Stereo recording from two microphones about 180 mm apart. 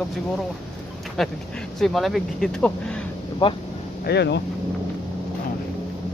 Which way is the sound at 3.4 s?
25° left (ahead or behind).